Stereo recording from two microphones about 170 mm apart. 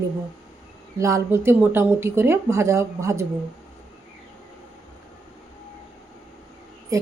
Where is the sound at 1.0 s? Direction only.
20° right (ahead or behind).